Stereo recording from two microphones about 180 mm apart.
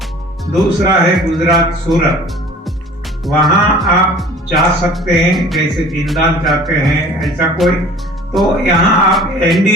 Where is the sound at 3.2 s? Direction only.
Centre (ahead or behind).